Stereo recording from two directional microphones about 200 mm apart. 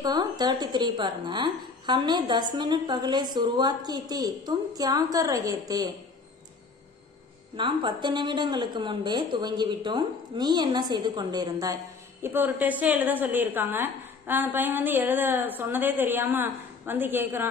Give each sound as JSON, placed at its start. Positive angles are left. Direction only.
{"t": 0.0, "sound": "a woman's voice", "side_deg": -20}
{"t": 7.5, "sound": "speech", "side_deg": -25}